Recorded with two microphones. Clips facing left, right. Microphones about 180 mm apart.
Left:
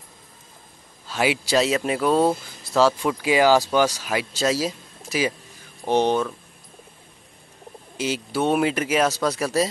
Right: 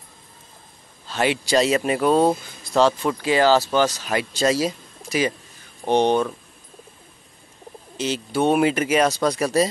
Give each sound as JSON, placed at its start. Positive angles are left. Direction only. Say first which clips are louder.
{"t": 1.0, "sound": "speech", "louder": "right 1 dB", "side_deg": 5}
{"t": 2.6, "sound": "speech", "louder": "right 1 dB", "side_deg": 5}
{"t": 8.0, "sound": "speech", "louder": "right 2 dB", "side_deg": 5}